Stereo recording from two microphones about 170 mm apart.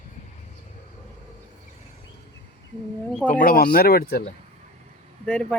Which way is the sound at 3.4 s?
55° left (ahead or behind).